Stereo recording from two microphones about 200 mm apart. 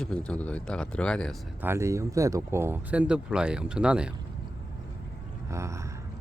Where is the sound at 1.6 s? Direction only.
10° right (ahead or behind).